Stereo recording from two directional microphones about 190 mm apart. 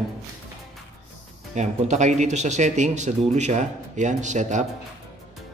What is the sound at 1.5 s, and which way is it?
Speech, 40° right (ahead or behind).